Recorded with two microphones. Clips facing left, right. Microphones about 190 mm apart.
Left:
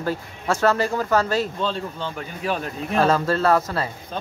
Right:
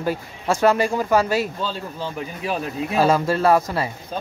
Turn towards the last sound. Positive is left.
turn(degrees=-10)  # may be behind; listen again after turning